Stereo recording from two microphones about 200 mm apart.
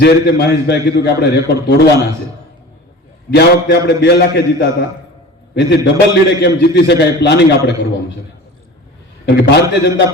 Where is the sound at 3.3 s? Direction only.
55° left (ahead or behind).